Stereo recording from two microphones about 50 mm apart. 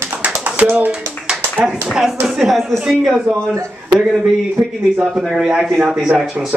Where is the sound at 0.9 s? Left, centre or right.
Centre.